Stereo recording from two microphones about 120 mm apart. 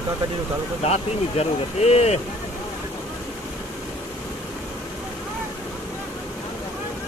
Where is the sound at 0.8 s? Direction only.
60° left (ahead or behind).